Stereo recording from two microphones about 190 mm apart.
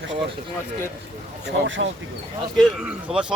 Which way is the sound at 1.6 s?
75° right (ahead or behind).